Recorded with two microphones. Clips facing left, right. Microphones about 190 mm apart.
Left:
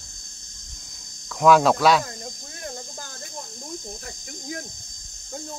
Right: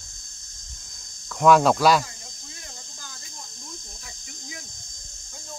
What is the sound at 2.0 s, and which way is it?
Cricket, 50° left (ahead or behind).